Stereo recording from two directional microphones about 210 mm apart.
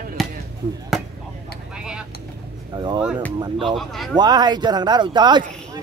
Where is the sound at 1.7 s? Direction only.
5° right (ahead or behind).